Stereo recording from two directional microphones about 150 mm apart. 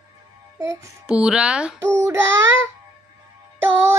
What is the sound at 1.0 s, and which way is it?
Speech, 5° right (ahead or behind).